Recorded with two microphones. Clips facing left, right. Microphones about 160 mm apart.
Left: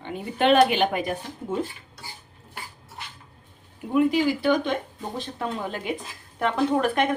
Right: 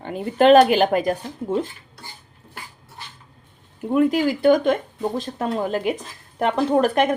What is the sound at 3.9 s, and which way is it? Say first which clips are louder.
Speech: right 2 dB; 45° right (ahead or behind).